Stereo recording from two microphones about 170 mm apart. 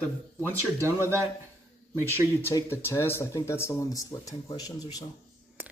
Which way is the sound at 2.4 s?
15° left (ahead or behind).